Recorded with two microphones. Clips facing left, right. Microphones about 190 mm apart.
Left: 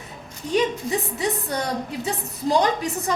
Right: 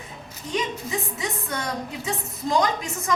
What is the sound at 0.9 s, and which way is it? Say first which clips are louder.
A woman's voice: left 5 dB; 35° left (ahead or behind).